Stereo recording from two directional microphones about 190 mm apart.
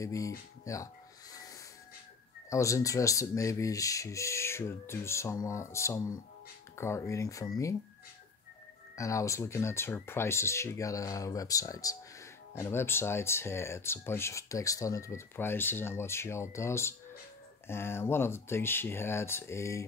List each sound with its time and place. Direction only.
0.0 s speech: 15° left (ahead or behind)
2.5 s speech: 15° left (ahead or behind)
8.9 s speech: 15° left (ahead or behind)